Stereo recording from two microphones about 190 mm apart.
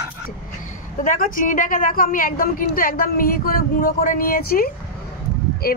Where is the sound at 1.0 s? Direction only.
45° left (ahead or behind).